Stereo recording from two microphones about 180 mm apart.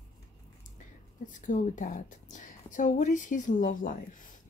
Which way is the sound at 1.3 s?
45° left (ahead or behind).